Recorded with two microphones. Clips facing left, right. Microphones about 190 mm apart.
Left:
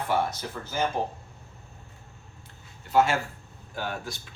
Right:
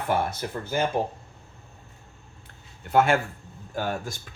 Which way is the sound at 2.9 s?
55° right (ahead or behind).